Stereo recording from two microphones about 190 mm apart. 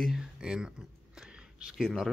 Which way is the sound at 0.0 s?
Centre (ahead or behind).